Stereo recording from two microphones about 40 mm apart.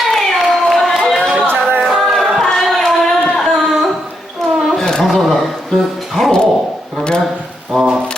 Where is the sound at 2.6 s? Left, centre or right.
Centre.